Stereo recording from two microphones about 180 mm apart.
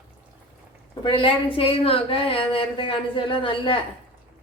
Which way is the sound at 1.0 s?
30° left (ahead or behind).